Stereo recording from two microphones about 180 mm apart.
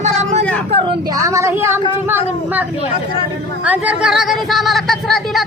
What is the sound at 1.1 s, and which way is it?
Speech, 15° right (ahead or behind).